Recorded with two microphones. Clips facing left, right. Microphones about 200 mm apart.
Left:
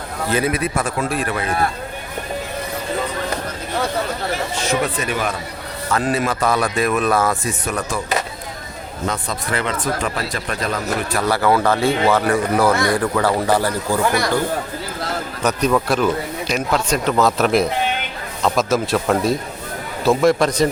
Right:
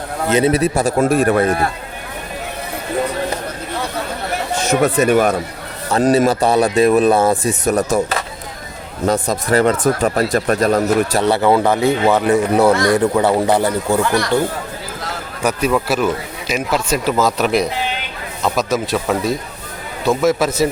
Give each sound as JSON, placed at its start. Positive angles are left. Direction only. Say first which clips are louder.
{"t": 0.3, "sound": "speech", "louder": "right 5 dB", "side_deg": -20}
{"t": 0.5, "sound": "speech", "louder": "right 6 dB", "side_deg": -35}
{"t": 0.9, "sound": "speech", "louder": "right 9 dB", "side_deg": -45}
{"t": 4.6, "sound": "speech", "louder": "right 9 dB", "side_deg": -45}
{"t": 7.6, "sound": "speech", "louder": "right 8 dB", "side_deg": -40}
{"t": 9.0, "sound": "speech", "louder": "right 8 dB", "side_deg": -45}
{"t": 11.2, "sound": "speech", "louder": "even", "side_deg": -25}
{"t": 15.4, "sound": "speech", "louder": "right 1 dB", "side_deg": -10}